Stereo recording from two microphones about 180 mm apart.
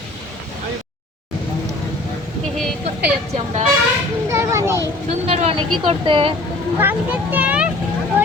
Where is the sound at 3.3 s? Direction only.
40° right (ahead or behind).